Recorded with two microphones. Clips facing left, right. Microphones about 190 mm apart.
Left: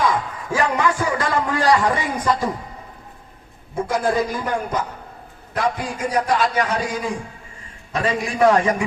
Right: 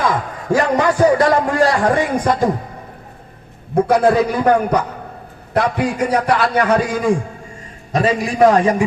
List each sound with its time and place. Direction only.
0.4 s a man's voice: 40° right (ahead or behind)
1.8 s speech: 55° right (ahead or behind)
3.8 s a man's voice: 65° right (ahead or behind)
7.9 s a man's voice: 35° right (ahead or behind)